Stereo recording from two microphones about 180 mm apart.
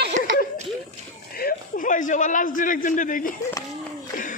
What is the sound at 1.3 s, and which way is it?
A man's voice, 50° left (ahead or behind).